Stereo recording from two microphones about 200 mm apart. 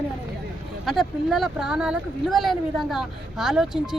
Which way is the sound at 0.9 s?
Centre (ahead or behind).